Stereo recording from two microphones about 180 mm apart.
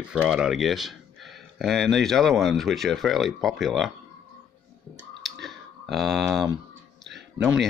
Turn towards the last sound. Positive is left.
turn(degrees=0)  # may be behind; listen again after turning